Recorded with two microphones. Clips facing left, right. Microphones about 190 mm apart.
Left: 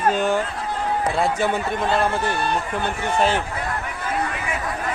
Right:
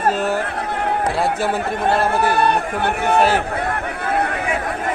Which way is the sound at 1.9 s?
65° right (ahead or behind).